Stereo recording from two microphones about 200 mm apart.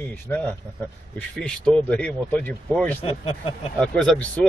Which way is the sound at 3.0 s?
30° left (ahead or behind).